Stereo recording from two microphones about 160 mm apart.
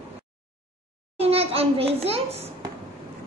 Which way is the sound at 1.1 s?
40° right (ahead or behind).